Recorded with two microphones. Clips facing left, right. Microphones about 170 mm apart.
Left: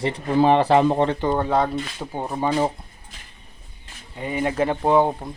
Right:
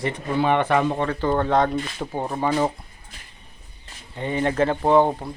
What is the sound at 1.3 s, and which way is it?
Speech, 10° left (ahead or behind).